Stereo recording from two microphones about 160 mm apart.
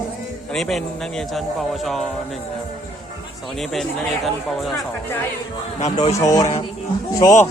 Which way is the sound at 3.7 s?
Centre (ahead or behind).